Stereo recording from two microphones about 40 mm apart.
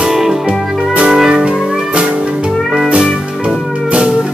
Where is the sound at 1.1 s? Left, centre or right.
Right.